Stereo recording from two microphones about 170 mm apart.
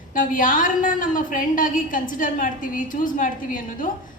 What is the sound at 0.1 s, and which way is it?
A woman's voice, 55° left (ahead or behind).